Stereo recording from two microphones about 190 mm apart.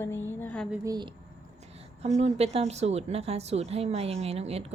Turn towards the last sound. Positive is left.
turn(degrees=-35)  # may be behind; listen again after turning